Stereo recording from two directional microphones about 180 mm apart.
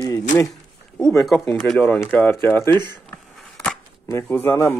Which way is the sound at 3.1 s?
5° left (ahead or behind).